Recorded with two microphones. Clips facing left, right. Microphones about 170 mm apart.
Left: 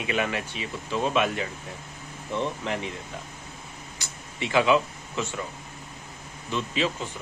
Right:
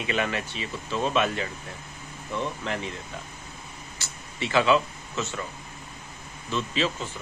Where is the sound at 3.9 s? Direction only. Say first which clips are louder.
Even; 15° left (ahead or behind).